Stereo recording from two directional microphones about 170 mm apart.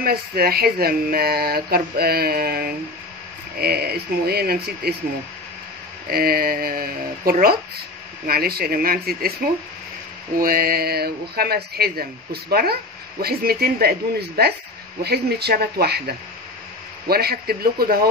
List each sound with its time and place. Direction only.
0.0 s speech: 65° right (ahead or behind)
6.0 s speech: 65° right (ahead or behind)
10.4 s speech: 60° right (ahead or behind)